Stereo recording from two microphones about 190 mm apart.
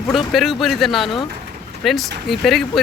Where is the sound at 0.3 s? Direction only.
Centre (ahead or behind).